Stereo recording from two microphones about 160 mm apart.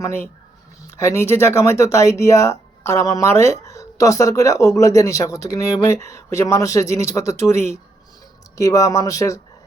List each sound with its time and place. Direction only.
0.9 s speech: 20° left (ahead or behind)